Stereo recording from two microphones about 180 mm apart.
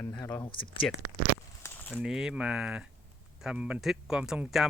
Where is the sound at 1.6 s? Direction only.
10° left (ahead or behind).